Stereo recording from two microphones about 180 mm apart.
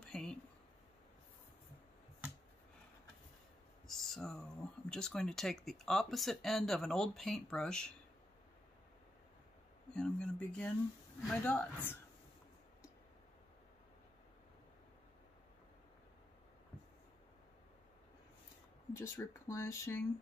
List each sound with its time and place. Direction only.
0.0 s a sound: 5° left (ahead or behind)
3.8 s speech: centre (ahead or behind)
9.9 s speech: 5° left (ahead or behind)
18.9 s speech: 15° left (ahead or behind)